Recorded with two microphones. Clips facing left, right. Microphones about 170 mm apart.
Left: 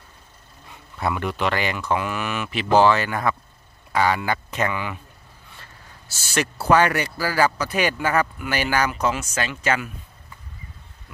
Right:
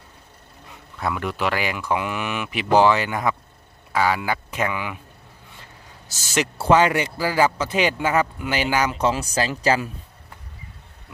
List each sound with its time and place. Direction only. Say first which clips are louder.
0.9 s speech: left 1 dB; centre (ahead or behind); by 3.3 s 15° right (ahead or behind)
3.9 s speech: even; 5° right (ahead or behind); by 9.8 s 35° right (ahead or behind)